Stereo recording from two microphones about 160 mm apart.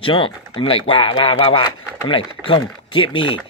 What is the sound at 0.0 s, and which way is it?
Speech, 35° left (ahead or behind).